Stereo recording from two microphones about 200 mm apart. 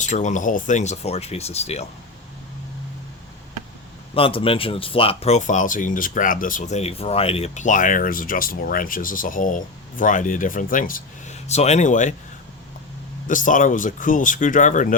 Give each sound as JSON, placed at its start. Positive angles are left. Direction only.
{"t": 0.0, "sound": "speech", "side_deg": 35}
{"t": 4.1, "sound": "speech", "side_deg": 25}
{"t": 13.2, "sound": "speech", "side_deg": 40}